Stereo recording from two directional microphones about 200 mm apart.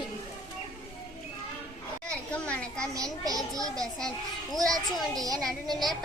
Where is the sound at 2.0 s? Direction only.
5° left (ahead or behind).